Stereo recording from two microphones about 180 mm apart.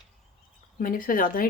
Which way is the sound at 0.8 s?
50° left (ahead or behind).